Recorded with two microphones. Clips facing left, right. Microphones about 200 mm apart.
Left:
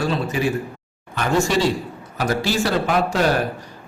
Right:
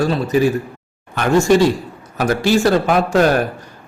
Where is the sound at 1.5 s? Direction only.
50° right (ahead or behind).